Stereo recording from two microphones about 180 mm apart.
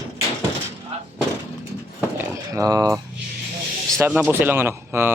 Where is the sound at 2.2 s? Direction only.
20° right (ahead or behind).